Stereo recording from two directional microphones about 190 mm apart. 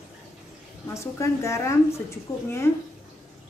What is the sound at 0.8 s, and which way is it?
A woman's voice, 15° left (ahead or behind).